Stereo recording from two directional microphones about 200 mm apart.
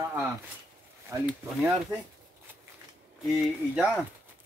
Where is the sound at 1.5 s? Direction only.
5° right (ahead or behind).